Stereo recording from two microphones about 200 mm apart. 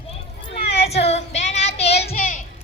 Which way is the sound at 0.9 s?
30° left (ahead or behind).